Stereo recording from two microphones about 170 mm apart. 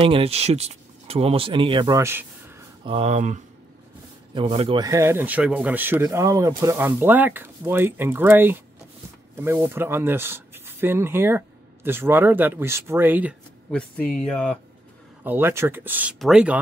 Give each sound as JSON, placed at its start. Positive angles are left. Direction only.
{"t": 0.0, "sound": "speech", "side_deg": -35}
{"t": 2.0, "sound": "speech", "side_deg": -15}
{"t": 2.8, "sound": "speech", "side_deg": -35}
{"t": 4.3, "sound": "speech", "side_deg": -30}
{"t": 13.7, "sound": "speech", "side_deg": 5}
{"t": 15.2, "sound": "speech", "side_deg": -15}